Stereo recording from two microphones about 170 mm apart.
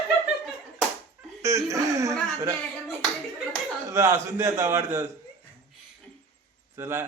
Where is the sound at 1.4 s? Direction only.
20° right (ahead or behind).